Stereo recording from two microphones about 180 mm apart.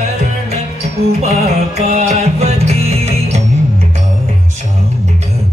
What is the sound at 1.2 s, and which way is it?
Music, 35° right (ahead or behind).